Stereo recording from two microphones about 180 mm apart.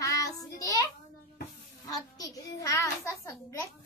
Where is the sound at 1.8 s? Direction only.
20° left (ahead or behind).